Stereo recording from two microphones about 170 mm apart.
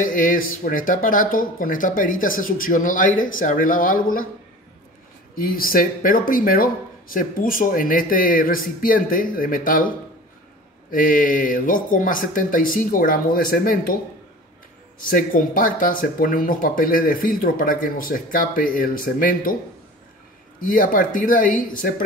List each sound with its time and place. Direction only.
0.0 s speech: 50° left (ahead or behind)
5.4 s speech: 60° left (ahead or behind)
15.0 s speech: 55° left (ahead or behind)
20.6 s speech: 55° left (ahead or behind)